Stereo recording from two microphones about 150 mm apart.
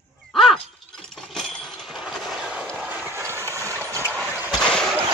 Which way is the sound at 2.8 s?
10° right (ahead or behind).